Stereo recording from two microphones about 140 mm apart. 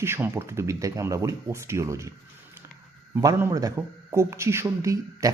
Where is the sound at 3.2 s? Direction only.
25° right (ahead or behind).